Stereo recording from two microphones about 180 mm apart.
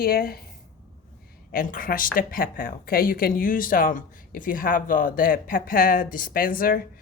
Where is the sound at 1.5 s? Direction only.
50° left (ahead or behind).